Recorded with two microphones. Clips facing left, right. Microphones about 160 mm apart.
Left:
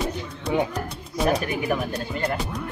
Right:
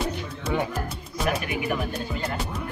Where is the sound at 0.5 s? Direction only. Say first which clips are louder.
Left 3 dB; 15° left (ahead or behind).